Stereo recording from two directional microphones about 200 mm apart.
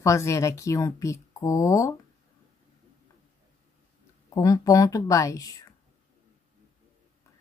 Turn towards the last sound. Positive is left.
turn(degrees=15)  # may be behind; listen again after turning